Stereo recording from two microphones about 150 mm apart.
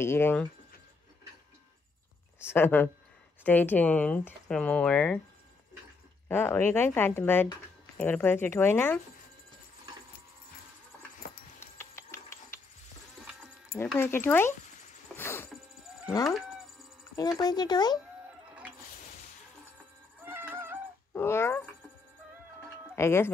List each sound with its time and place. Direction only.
0.0 s speech: 15° left (ahead or behind)
2.5 s speech: 10° left (ahead or behind)
6.2 s speech: 15° left (ahead or behind)
11.2 s a sound: 80° left
11.6 s a sound: 15° left (ahead or behind)
13.9 s speech: 15° left (ahead or behind)
15.1 s a sound: 15° left (ahead or behind)
16.3 s speech: centre (ahead or behind)
17.4 s speech: 25° left (ahead or behind)
20.2 s music: 15° right (ahead or behind)
21.1 s speech: 15° left (ahead or behind)
22.9 s speech: 15° left (ahead or behind)